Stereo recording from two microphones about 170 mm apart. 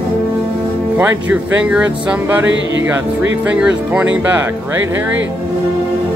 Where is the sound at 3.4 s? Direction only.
5° right (ahead or behind).